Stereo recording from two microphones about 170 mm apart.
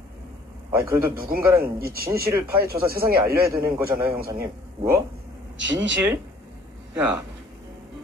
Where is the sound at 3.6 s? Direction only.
10° right (ahead or behind).